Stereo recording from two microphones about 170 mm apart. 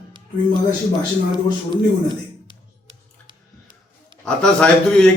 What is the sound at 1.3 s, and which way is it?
A man's voice, 30° right (ahead or behind).